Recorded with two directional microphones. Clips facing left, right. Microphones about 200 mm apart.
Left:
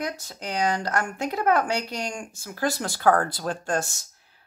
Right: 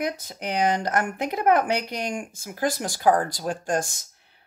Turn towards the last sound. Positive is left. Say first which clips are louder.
# right 1 dB
turn(degrees=-15)  # may be behind; listen again after turning